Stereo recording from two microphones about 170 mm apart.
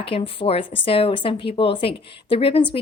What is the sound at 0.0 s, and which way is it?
A woman's voice, 35° left (ahead or behind).